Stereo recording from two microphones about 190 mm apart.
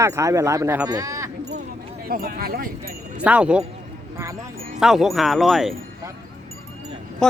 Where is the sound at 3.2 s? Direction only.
5° right (ahead or behind).